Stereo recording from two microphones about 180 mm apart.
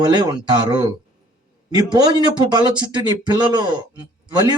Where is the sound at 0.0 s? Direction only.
25° right (ahead or behind).